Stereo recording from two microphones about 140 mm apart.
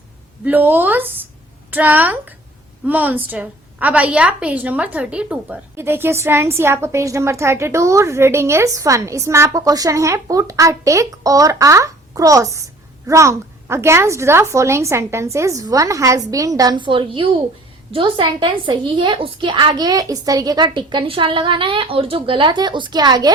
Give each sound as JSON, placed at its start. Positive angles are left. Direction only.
{"t": 0.4, "sound": "a woman's voice", "side_deg": -15}